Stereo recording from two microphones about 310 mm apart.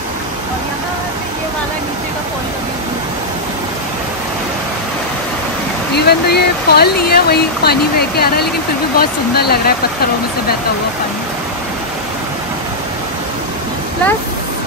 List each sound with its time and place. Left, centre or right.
5.9 s speech: left